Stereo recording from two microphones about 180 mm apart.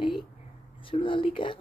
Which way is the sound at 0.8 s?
30° left (ahead or behind).